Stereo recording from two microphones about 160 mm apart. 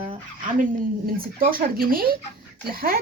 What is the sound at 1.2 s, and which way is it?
Speech, 65° right (ahead or behind).